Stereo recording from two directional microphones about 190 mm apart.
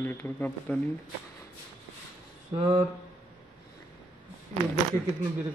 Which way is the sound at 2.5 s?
30° right (ahead or behind).